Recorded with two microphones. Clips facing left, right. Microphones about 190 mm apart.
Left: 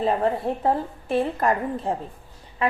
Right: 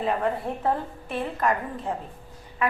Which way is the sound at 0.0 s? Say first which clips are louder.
Left 4 dB; 30° left (ahead or behind).